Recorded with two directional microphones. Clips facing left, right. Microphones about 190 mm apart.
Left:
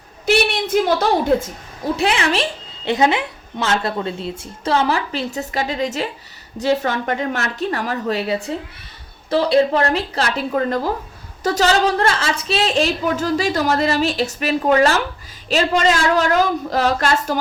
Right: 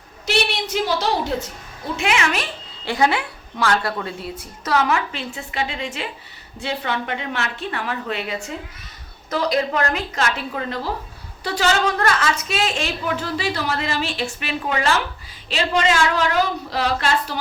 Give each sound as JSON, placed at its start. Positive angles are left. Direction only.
{"t": 0.3, "sound": "a woman's voice", "side_deg": 50}
{"t": 2.0, "sound": "a woman's voice", "side_deg": 35}